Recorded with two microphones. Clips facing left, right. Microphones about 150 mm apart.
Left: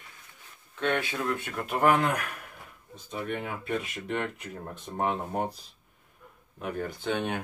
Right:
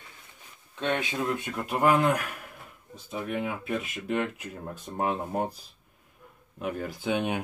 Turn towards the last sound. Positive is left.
turn(degrees=-10)  # may be behind; listen again after turning